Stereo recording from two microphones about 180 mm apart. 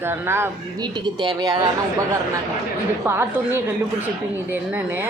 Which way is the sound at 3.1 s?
15° right (ahead or behind).